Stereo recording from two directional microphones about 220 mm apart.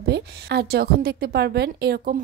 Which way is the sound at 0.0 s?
50° right (ahead or behind).